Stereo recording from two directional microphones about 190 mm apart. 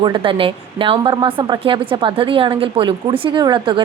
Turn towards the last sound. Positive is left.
turn(degrees=-25)  # may be behind; listen again after turning